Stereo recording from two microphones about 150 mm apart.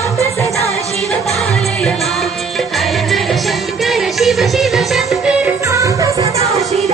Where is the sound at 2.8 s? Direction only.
Centre (ahead or behind).